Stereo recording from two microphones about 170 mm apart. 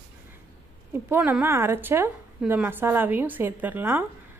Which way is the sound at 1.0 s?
10° right (ahead or behind).